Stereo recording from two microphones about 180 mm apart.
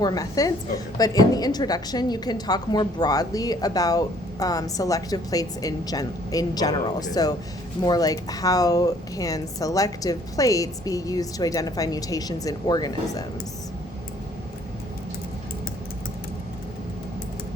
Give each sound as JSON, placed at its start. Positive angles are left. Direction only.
{"t": 0.0, "sound": "a woman's voice", "side_deg": 20}